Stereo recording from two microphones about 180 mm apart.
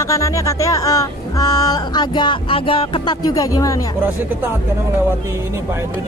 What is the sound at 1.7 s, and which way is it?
Speech, 25° left (ahead or behind).